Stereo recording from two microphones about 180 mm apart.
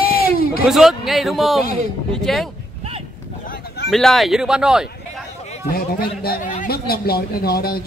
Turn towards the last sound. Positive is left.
turn(degrees=60)  # may be behind; listen again after turning